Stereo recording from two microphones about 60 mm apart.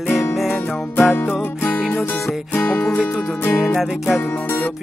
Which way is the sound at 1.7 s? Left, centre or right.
Centre.